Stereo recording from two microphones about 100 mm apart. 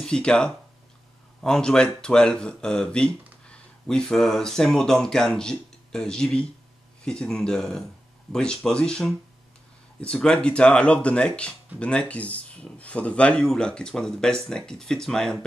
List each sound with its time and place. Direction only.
0.0 s speech: 10° left (ahead or behind)